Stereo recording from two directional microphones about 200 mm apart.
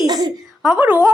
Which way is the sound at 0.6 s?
5° right (ahead or behind).